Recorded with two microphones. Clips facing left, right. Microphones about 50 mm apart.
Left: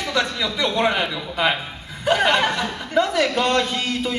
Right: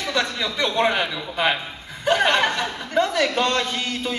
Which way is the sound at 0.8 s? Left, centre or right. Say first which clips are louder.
Left 1 dB; centre.